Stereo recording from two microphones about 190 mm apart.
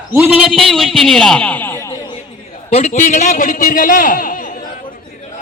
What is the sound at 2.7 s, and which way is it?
A man's voice, 35° left (ahead or behind).